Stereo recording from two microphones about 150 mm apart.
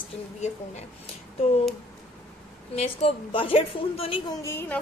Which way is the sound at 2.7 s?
45° left (ahead or behind).